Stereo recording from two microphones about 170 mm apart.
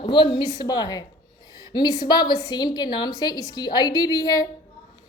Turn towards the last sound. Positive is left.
turn(degrees=20)  # may be behind; listen again after turning